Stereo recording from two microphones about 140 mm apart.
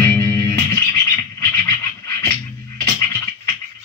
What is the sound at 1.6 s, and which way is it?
Scratching, 20° left (ahead or behind).